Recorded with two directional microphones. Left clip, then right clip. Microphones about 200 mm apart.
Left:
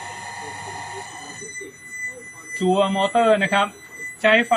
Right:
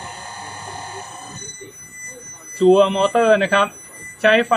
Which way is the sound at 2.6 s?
35° right (ahead or behind).